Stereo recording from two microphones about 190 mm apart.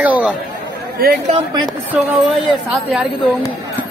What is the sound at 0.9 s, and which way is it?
Speech, 55° right (ahead or behind).